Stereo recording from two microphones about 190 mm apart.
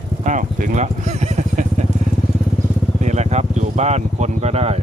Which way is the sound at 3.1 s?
35° right (ahead or behind).